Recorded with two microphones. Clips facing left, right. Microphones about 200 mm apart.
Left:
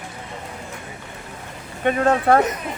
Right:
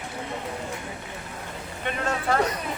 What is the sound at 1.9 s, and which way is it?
Speech, 55° left (ahead or behind).